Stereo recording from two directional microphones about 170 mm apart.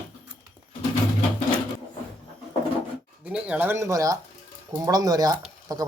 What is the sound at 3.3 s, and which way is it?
Speech, 5° right (ahead or behind).